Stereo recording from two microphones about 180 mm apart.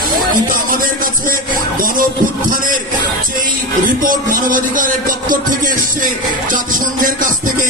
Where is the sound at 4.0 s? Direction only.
50° right (ahead or behind).